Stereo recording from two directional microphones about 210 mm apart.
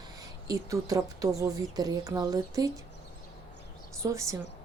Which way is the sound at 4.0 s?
15° right (ahead or behind).